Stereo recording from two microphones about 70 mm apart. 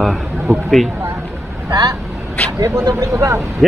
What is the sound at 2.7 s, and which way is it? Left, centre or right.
Speech, right.